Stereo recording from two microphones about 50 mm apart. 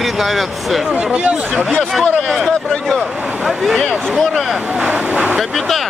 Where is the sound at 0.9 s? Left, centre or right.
Right.